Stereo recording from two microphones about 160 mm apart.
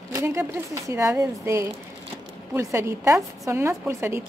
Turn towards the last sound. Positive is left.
turn(degrees=-15)  # may be behind; listen again after turning